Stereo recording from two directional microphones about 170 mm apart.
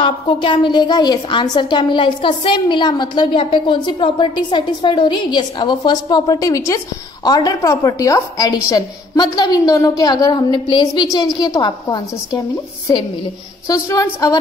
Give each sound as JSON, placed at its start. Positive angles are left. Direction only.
{"t": 0.0, "sound": "a woman's voice", "side_deg": 30}
{"t": 13.7, "sound": "a woman's voice", "side_deg": 20}